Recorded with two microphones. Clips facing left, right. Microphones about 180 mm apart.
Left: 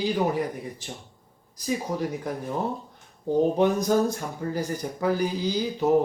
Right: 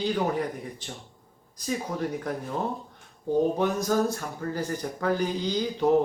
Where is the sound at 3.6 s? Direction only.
20° left (ahead or behind).